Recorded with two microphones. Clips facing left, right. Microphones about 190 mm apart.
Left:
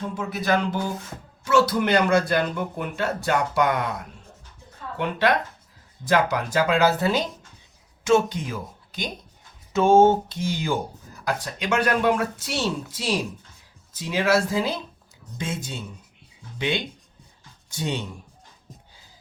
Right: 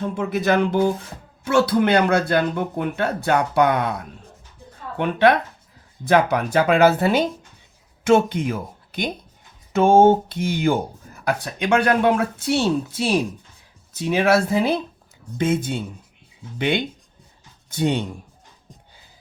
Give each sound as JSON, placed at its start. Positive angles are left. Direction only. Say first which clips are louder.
{"t": 0.0, "sound": "a sound", "louder": "right 6 dB", "side_deg": -55}
{"t": 1.5, "sound": "speech", "louder": "right 3 dB", "side_deg": -55}
{"t": 6.1, "sound": "speech", "louder": "right 4 dB", "side_deg": -55}